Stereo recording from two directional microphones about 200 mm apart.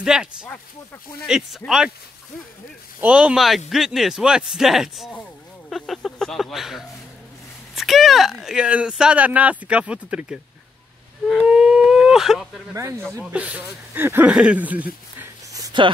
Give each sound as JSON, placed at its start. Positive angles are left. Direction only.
{"t": 0.0, "sound": "speech", "side_deg": -5}
{"t": 3.0, "sound": "speech", "side_deg": -5}
{"t": 12.7, "sound": "speech", "side_deg": -15}
{"t": 15.1, "sound": "a sound", "side_deg": -15}